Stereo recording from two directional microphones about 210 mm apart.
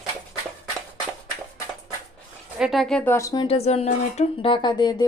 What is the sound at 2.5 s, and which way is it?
Speech, centre (ahead or behind).